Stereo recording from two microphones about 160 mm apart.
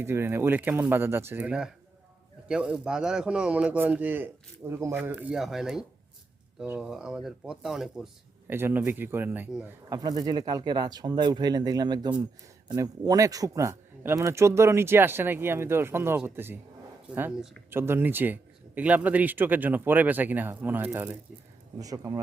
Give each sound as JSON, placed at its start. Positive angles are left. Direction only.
{"t": 0.0, "sound": "speech", "side_deg": -15}
{"t": 8.4, "sound": "speech", "side_deg": -15}
{"t": 9.6, "sound": "speech", "side_deg": -25}
{"t": 21.8, "sound": "speech", "side_deg": -20}